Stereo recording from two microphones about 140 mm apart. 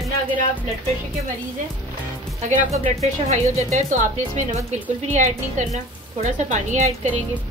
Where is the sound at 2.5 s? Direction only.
65° right (ahead or behind).